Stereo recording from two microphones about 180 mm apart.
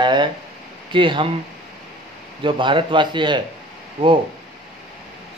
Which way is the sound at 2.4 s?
25° right (ahead or behind).